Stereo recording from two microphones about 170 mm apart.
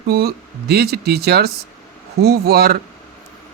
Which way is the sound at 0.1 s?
65° right (ahead or behind).